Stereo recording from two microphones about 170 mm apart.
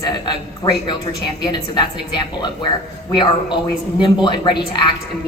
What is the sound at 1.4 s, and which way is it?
A woman's voice, 25° left (ahead or behind).